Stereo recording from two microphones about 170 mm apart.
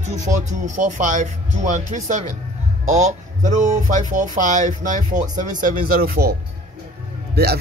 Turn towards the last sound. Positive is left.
turn(degrees=-70)  # may be behind; listen again after turning